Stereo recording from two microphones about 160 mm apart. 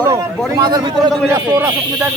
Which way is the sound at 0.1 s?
25° right (ahead or behind).